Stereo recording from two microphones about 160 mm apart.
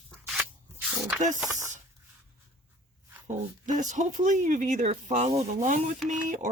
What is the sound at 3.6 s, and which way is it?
Speech, 50° right (ahead or behind).